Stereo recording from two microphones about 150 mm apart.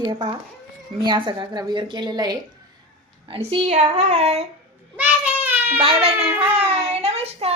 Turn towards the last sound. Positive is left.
turn(degrees=-45)  # may be behind; listen again after turning